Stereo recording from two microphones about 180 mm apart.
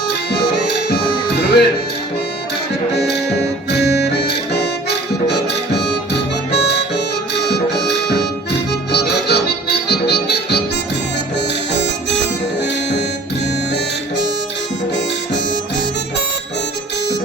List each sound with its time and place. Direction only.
0.9 s music: 65° left (ahead or behind)
2.9 s music: 70° left (ahead or behind)
6.5 s harmonica: 70° left (ahead or behind)
7.4 s music: 70° left (ahead or behind)